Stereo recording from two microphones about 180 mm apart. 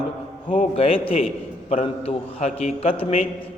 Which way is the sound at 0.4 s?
30° left (ahead or behind).